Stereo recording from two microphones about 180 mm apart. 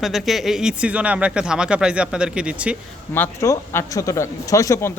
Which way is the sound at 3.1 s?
15° left (ahead or behind).